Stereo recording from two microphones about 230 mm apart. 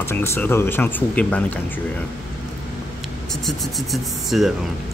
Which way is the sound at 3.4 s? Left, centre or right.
Centre.